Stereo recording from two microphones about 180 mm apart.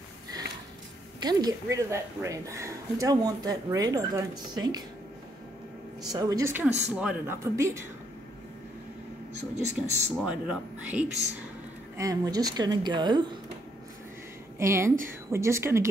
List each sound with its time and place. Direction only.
1.2 s a woman's voice: 20° right (ahead or behind)
6.0 s a woman's voice: 20° right (ahead or behind)
9.4 s speech: 40° right (ahead or behind)
10.2 s speech: 5° right (ahead or behind)
12.0 s a woman's voice: 20° right (ahead or behind)
14.6 s speech: 15° right (ahead or behind)